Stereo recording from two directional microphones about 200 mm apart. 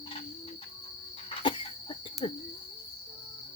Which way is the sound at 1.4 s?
25° left (ahead or behind).